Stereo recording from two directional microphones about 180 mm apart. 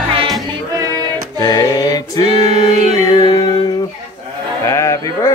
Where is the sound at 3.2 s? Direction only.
25° left (ahead or behind).